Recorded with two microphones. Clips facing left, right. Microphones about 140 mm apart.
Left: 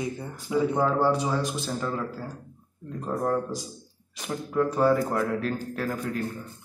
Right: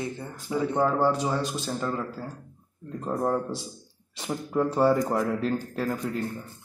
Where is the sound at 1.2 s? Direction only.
20° right (ahead or behind).